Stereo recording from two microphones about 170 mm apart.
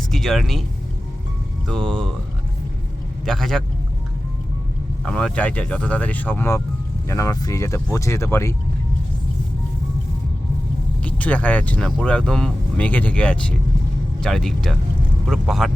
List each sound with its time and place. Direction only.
0.1 s speech: centre (ahead or behind)
1.6 s speech: 5° left (ahead or behind)
3.2 s speech: centre (ahead or behind)
5.0 s speech: 5° left (ahead or behind)
11.0 s speech: 10° left (ahead or behind)